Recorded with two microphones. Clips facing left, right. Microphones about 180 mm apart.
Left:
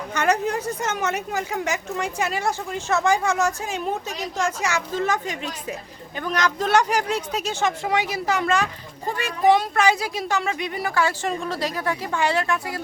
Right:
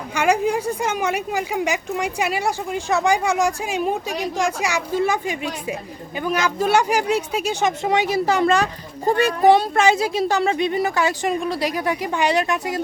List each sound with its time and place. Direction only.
0.1 s a woman's voice: 10° right (ahead or behind)
7.9 s speech: 25° right (ahead or behind)